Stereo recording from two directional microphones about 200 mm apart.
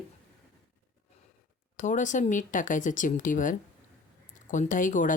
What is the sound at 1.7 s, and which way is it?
Speech, 40° left (ahead or behind).